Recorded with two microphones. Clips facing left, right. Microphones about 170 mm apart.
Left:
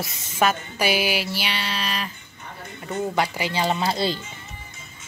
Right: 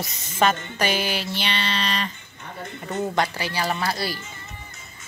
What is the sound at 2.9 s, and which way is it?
Speech, 15° left (ahead or behind).